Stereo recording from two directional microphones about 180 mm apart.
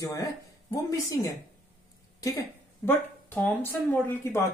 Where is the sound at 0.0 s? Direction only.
20° left (ahead or behind).